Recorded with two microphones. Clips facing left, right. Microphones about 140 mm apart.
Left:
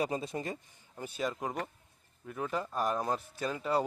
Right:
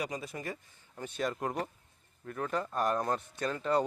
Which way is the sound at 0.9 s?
5° left (ahead or behind).